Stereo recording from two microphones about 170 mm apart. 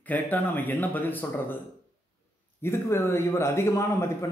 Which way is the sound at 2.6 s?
15° left (ahead or behind).